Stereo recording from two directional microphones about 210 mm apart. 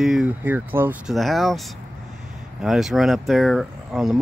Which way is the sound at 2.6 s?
Centre (ahead or behind).